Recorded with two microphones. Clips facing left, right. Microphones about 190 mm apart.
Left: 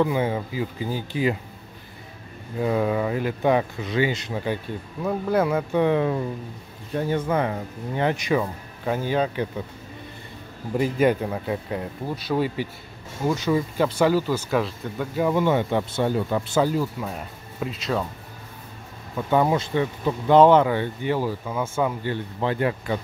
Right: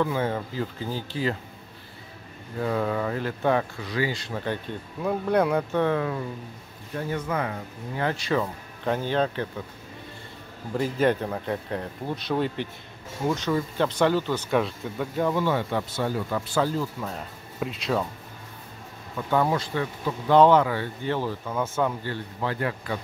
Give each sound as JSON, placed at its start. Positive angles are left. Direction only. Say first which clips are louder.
{"t": 0.0, "sound": "speech", "louder": "left 3 dB", "side_deg": 15}
{"t": 2.6, "sound": "speech", "louder": "left 3 dB", "side_deg": 15}
{"t": 5.0, "sound": "speech", "louder": "left 1 dB", "side_deg": 0}
{"t": 10.8, "sound": "speech", "louder": "left 3 dB", "side_deg": 10}
{"t": 15.3, "sound": "speech", "louder": "left 4 dB", "side_deg": 20}
{"t": 16.7, "sound": "speech", "louder": "left 3 dB", "side_deg": 10}
{"t": 19.1, "sound": "speech", "louder": "left 3 dB", "side_deg": 20}